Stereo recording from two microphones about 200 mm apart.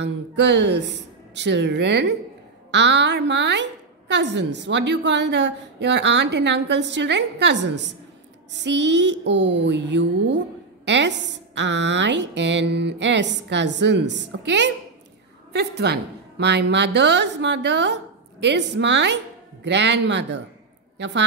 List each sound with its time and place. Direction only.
0.0 s a woman's voice: 60° right (ahead or behind)